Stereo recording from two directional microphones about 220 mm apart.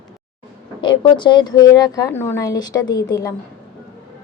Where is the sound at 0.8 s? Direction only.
20° left (ahead or behind).